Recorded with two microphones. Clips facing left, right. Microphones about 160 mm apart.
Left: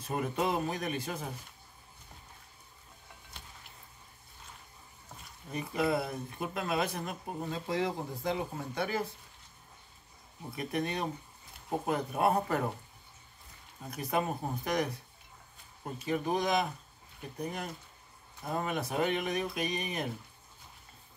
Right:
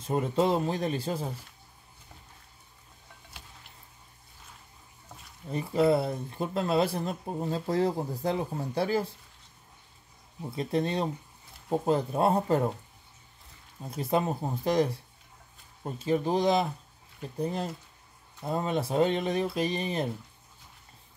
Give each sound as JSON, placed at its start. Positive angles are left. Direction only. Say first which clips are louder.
{"t": 0.0, "sound": "speech", "louder": "right 6 dB", "side_deg": -25}
{"t": 5.5, "sound": "speech", "louder": "right 7 dB", "side_deg": -30}
{"t": 10.5, "sound": "speech", "louder": "right 5 dB", "side_deg": -25}
{"t": 13.8, "sound": "speech", "louder": "right 4 dB", "side_deg": -25}